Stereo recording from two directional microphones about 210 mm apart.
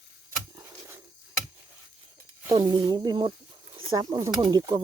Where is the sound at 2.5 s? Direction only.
20° right (ahead or behind).